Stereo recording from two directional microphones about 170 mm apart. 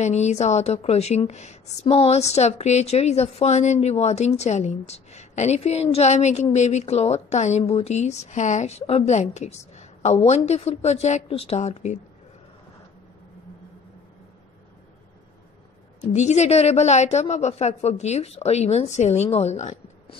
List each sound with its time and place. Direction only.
0.0 s a woman's voice: 40° left (ahead or behind)
16.1 s a woman's voice: 40° left (ahead or behind)